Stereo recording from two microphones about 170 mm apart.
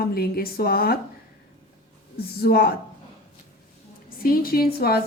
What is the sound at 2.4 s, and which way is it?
Speech, 65° left (ahead or behind).